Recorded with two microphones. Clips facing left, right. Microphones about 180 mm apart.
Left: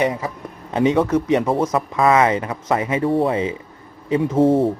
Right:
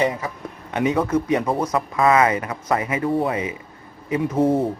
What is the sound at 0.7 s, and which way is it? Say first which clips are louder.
Speech: left 3 dB; 30° left (ahead or behind).